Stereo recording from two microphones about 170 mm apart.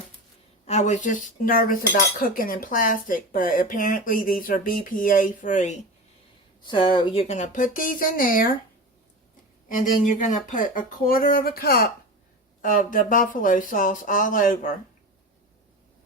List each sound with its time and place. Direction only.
0.7 s cutlery: 45° left (ahead or behind)
6.7 s cutlery: 30° left (ahead or behind); by 8.4 s 55° left (ahead or behind)
9.6 s speech: 50° left (ahead or behind)
12.6 s cutlery: 50° left (ahead or behind)